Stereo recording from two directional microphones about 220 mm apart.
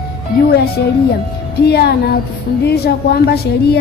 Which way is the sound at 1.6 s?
50° left (ahead or behind).